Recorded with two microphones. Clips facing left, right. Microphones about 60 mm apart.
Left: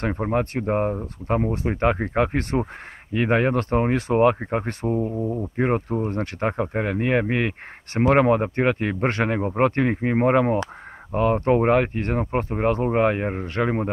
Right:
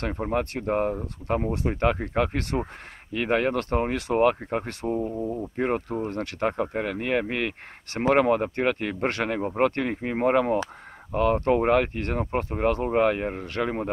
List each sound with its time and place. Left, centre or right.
0.0 s speech: left
4.9 s speech: centre
5.6 s speech: left
6.0 s speech: left